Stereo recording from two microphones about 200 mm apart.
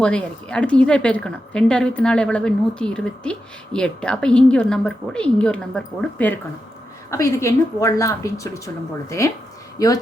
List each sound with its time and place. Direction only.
0.0 s a woman's voice: 5° left (ahead or behind)